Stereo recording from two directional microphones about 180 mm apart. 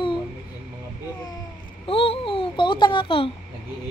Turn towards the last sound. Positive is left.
turn(degrees=30)  # may be behind; listen again after turning